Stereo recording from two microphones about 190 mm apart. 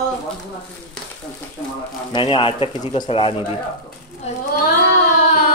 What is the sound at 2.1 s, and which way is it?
Speech, 25° left (ahead or behind).